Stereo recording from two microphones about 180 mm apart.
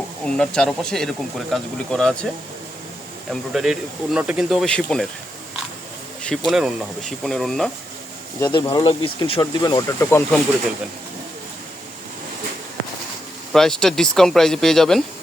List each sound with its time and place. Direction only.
0.3 s speech: 5° left (ahead or behind)
3.5 s speech: 5° right (ahead or behind)
6.2 s speech: centre (ahead or behind)
8.5 s speech: 25° left (ahead or behind)
9.6 s speech: 20° left (ahead or behind)
13.5 s speech: 5° left (ahead or behind)